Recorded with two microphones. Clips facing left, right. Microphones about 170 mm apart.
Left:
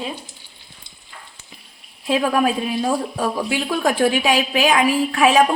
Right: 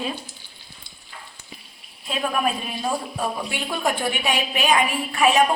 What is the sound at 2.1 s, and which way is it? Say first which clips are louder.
A woman's voice: left 6 dB; 90° left.